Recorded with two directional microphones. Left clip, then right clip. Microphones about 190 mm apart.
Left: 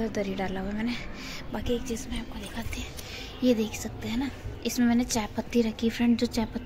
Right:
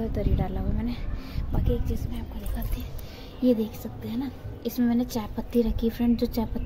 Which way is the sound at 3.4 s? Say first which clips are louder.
Right 1 dB; 15° right (ahead or behind).